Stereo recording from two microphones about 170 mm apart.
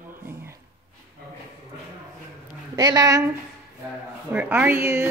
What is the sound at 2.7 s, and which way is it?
Speech, 20° right (ahead or behind).